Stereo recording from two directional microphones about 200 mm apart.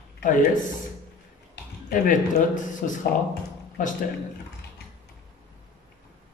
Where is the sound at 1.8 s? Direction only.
40° left (ahead or behind).